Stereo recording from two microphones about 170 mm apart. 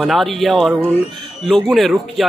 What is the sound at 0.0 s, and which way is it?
A man's voice, centre (ahead or behind).